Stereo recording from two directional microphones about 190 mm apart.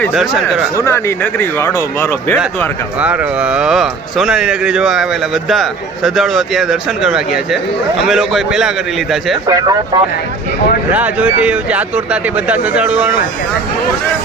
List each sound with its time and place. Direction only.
0.1 s speech: centre (ahead or behind)
0.8 s speech: 15° left (ahead or behind)
3.0 s speech: 5° right (ahead or behind)
9.5 s speech: 20° right (ahead or behind)
10.9 s speech: 10° right (ahead or behind)